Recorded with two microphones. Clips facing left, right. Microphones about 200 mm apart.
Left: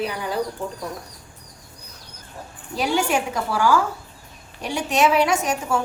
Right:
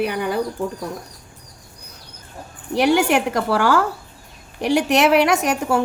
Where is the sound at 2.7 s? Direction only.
70° right (ahead or behind).